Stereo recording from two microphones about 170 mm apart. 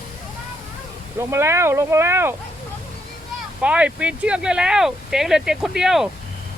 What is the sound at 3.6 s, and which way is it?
Speech, 5° right (ahead or behind).